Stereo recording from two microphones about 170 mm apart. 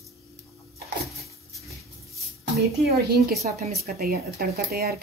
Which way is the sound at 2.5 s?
70° right (ahead or behind).